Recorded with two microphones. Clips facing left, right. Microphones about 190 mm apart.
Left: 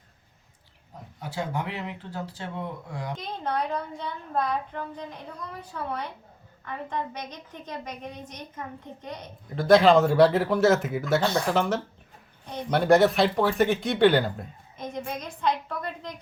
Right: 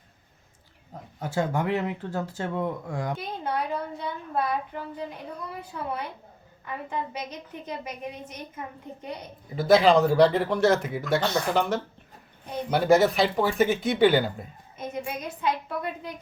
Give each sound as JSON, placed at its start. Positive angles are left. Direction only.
{"t": 1.2, "sound": "speech", "side_deg": -45}
{"t": 3.2, "sound": "a child's voice", "side_deg": -5}